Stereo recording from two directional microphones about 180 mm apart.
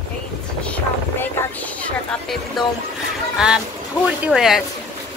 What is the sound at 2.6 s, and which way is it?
Speech, centre (ahead or behind).